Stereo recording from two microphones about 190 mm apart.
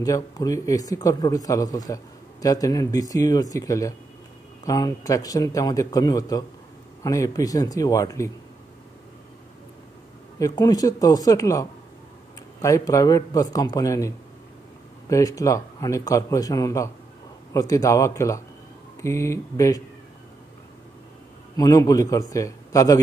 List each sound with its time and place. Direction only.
0.0 s a man's voice: 20° left (ahead or behind)
10.4 s speech: 20° left (ahead or behind)
12.6 s a man's voice: 15° left (ahead or behind)
21.5 s speech: 20° left (ahead or behind)